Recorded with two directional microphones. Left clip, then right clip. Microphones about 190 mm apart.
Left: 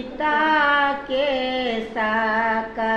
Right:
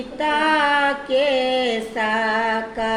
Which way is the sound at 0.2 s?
35° right (ahead or behind).